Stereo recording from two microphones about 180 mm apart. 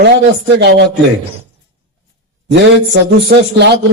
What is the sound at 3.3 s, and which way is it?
Speech, 80° right.